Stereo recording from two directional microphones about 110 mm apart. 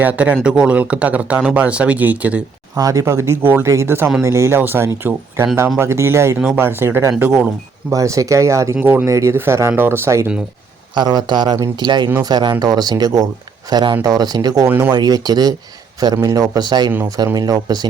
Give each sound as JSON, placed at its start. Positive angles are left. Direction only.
{"t": 0.0, "sound": "speech", "side_deg": -15}
{"t": 2.7, "sound": "speech", "side_deg": -30}
{"t": 7.9, "sound": "speech", "side_deg": -30}
{"t": 10.9, "sound": "speech", "side_deg": -40}
{"t": 14.7, "sound": "speech", "side_deg": -20}
{"t": 14.9, "sound": "speech", "side_deg": -35}